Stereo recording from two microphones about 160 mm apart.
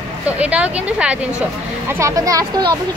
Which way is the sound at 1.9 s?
15° right (ahead or behind).